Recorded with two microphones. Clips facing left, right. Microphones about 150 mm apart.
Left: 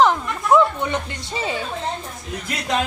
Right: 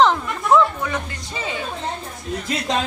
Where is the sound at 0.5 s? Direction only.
25° left (ahead or behind).